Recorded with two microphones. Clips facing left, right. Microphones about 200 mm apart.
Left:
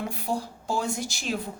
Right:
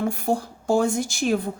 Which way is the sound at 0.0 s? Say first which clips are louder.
Right 6 dB; 50° right (ahead or behind).